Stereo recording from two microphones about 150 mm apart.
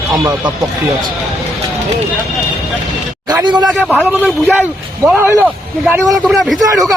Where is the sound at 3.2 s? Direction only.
25° right (ahead or behind).